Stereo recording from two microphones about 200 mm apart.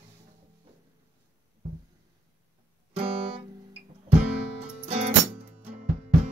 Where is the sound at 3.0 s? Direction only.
30° right (ahead or behind).